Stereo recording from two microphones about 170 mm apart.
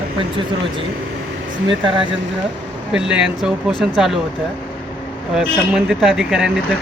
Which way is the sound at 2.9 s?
5° right (ahead or behind).